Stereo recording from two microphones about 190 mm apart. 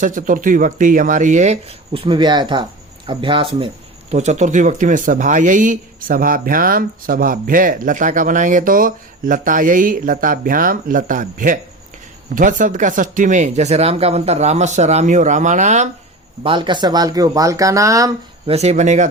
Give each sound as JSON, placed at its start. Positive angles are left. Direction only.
{"t": 0.0, "sound": "speech", "side_deg": -45}
{"t": 4.1, "sound": "speech", "side_deg": -35}
{"t": 16.4, "sound": "speech", "side_deg": -25}
{"t": 18.4, "sound": "speech", "side_deg": -35}